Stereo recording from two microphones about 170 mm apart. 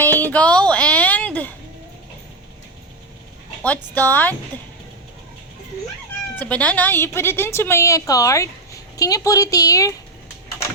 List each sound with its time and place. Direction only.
0.2 s a sound: 10° left (ahead or behind)
3.6 s a woman's voice: 10° left (ahead or behind)
6.3 s a woman's voice: 10° left (ahead or behind)